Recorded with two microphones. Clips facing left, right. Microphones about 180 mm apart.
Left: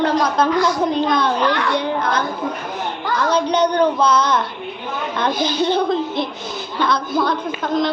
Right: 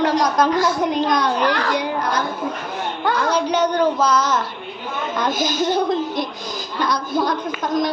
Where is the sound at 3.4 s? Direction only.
10° right (ahead or behind).